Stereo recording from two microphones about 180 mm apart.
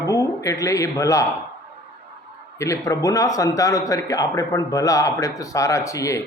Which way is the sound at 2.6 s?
15° left (ahead or behind).